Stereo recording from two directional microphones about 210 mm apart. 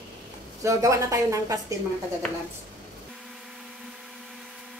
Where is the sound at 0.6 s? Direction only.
15° right (ahead or behind).